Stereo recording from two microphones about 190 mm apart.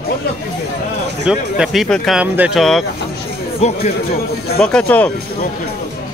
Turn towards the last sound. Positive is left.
turn(degrees=5)  # may be behind; listen again after turning